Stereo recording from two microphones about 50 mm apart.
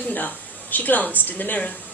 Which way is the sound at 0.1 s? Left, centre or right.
Left.